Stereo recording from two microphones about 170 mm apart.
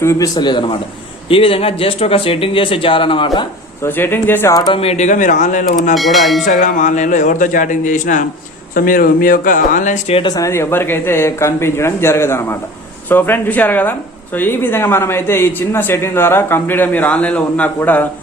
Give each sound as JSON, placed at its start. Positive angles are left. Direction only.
{"t": 0.0, "sound": "a man's voice", "side_deg": 15}
{"t": 3.8, "sound": "speech", "side_deg": 10}
{"t": 4.5, "sound": "a man's voice", "side_deg": 25}
{"t": 4.8, "sound": "a man's voice", "side_deg": 40}
{"t": 5.9, "sound": "speech", "side_deg": 0}
{"t": 6.4, "sound": "a man's voice", "side_deg": 50}
{"t": 10.2, "sound": "speech", "side_deg": 25}